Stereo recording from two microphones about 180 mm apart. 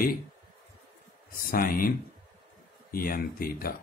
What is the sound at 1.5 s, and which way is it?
Speech, 50° left (ahead or behind).